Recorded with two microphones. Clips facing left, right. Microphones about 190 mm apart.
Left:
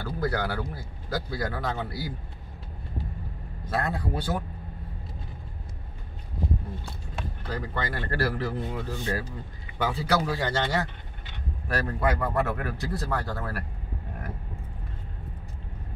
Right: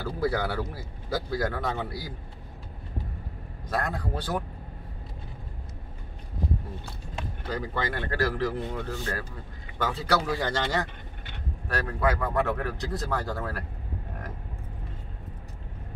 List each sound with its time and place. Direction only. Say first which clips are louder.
0.0 s speech: right 1 dB; 5° right (ahead or behind)
3.6 s speech: left 1 dB; 10° left (ahead or behind)
7.4 s speech: right 2 dB; centre (ahead or behind)